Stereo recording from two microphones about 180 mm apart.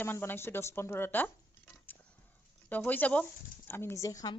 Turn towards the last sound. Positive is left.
turn(degrees=20)  # may be behind; listen again after turning